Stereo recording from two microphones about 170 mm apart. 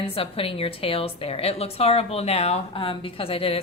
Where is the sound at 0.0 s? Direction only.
35° left (ahead or behind).